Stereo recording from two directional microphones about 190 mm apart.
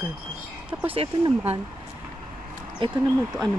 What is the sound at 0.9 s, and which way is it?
Speech, 30° right (ahead or behind).